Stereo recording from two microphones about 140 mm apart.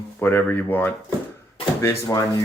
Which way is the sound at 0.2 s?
15° left (ahead or behind).